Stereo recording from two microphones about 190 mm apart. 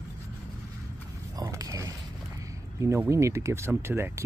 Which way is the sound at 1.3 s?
20° right (ahead or behind).